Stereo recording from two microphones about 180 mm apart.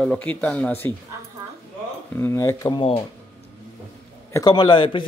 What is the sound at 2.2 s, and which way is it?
Speech, 15° left (ahead or behind).